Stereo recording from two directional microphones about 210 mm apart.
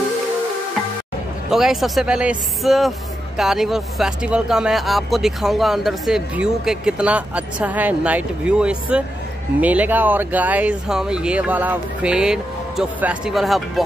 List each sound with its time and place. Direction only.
1.5 s speech: centre (ahead or behind)